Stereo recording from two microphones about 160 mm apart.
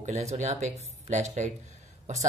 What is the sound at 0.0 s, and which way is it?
Speech, 45° right (ahead or behind).